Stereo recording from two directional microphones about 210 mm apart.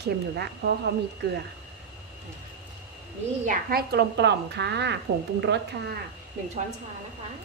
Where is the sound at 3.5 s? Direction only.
50° right (ahead or behind).